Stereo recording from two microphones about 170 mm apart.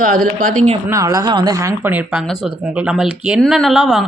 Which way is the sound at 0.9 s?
20° right (ahead or behind).